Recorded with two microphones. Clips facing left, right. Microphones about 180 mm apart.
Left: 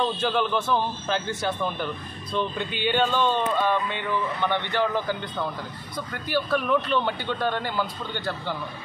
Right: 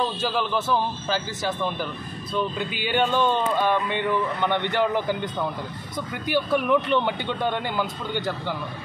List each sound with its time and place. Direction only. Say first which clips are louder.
0.0 s a man's voice: left 1 dB; 5° right (ahead or behind)